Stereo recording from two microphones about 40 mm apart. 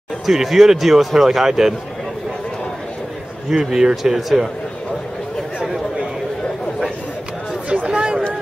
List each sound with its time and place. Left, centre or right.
0.3 s speech: centre
3.4 s speech: centre
7.9 s a sound: right